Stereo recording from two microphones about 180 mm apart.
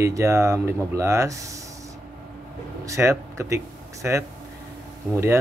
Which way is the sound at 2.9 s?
15° right (ahead or behind).